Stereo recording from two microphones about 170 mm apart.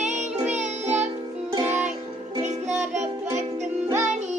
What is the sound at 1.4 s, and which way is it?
Music, 20° right (ahead or behind).